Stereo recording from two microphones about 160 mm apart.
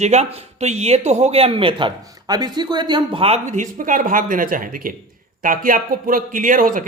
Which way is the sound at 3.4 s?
50° right (ahead or behind).